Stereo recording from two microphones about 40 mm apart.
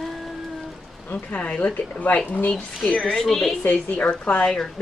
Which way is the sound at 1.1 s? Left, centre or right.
Left.